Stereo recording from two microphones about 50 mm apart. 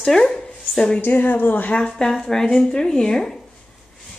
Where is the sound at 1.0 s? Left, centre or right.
Left.